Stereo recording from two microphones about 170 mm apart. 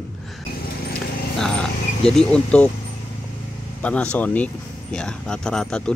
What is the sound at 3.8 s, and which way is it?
Speech, 5° left (ahead or behind).